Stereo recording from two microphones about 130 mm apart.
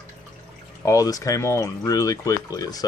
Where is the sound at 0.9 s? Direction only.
25° left (ahead or behind).